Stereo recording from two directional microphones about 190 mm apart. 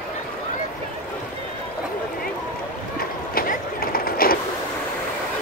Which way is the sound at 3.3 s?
50° left (ahead or behind).